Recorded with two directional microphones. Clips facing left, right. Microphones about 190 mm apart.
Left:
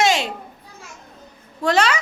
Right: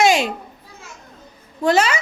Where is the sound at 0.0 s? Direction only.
15° right (ahead or behind).